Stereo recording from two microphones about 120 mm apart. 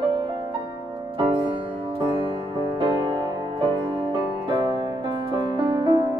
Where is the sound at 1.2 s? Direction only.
45° right (ahead or behind).